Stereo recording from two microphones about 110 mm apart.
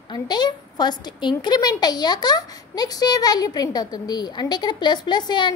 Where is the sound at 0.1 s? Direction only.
40° left (ahead or behind).